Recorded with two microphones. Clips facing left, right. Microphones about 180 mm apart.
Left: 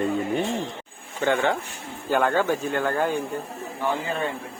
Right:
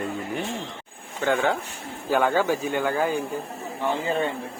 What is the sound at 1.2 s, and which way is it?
Speech, centre (ahead or behind).